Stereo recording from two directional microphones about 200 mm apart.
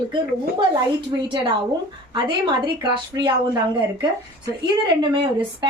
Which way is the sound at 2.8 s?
20° right (ahead or behind).